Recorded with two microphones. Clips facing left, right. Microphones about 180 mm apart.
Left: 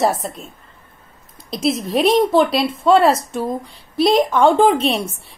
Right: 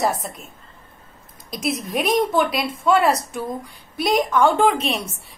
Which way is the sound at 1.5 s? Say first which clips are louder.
Left 6 dB; 25° left (ahead or behind).